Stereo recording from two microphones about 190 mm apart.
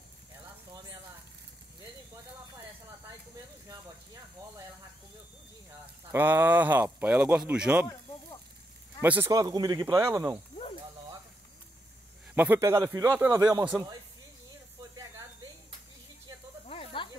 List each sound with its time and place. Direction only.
6.1 s a man's voice: 10° right (ahead or behind)
9.0 s a man's voice: 10° right (ahead or behind)
9.3 s speech: 20° right (ahead or behind)
12.4 s a man's voice: 15° right (ahead or behind)
16.6 s snake: 30° left (ahead or behind)